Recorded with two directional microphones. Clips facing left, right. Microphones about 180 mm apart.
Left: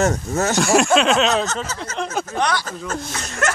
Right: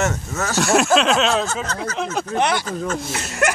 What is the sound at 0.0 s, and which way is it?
Speech, 35° left (ahead or behind).